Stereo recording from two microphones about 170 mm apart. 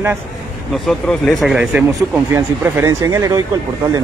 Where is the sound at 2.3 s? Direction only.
15° right (ahead or behind).